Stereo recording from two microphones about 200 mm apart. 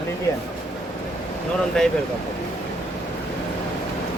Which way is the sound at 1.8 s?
5° left (ahead or behind).